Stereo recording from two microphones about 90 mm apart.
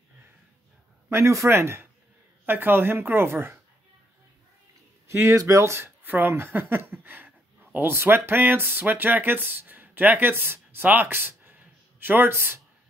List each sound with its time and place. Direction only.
1.1 s speech: 35° right (ahead or behind)
5.0 s speech: 35° right (ahead or behind)